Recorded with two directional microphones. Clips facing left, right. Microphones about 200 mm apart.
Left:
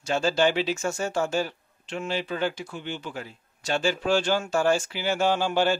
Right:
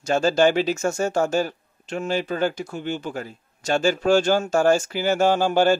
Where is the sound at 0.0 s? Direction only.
45° right (ahead or behind).